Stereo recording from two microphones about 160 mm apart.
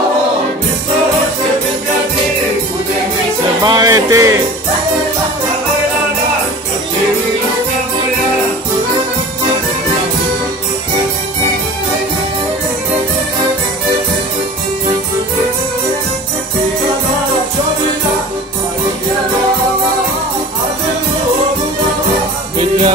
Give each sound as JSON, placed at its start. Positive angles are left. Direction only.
{"t": 3.6, "sound": "music", "side_deg": -25}
{"t": 22.6, "sound": "music", "side_deg": -40}